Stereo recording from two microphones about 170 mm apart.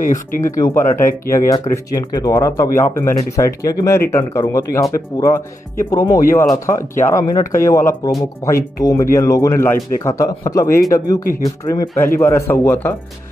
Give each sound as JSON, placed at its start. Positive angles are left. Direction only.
{"t": 0.0, "sound": "speech", "side_deg": 50}
{"t": 0.6, "sound": "speech", "side_deg": 25}
{"t": 0.9, "sound": "speech", "side_deg": 50}
{"t": 1.3, "sound": "speech", "side_deg": 20}